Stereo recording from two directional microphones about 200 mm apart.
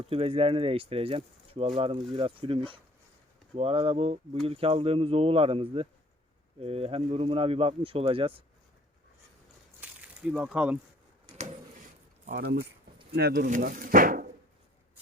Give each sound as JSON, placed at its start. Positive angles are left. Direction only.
{"t": 0.1, "sound": "speech", "side_deg": -30}
{"t": 9.8, "sound": "a sound", "side_deg": -5}
{"t": 12.2, "sound": "speech", "side_deg": -45}